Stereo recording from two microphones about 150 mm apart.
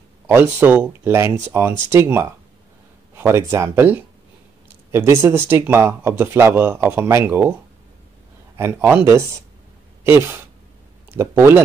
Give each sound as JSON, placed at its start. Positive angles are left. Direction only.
{"t": 0.3, "sound": "speech", "side_deg": -15}
{"t": 8.5, "sound": "speech", "side_deg": -15}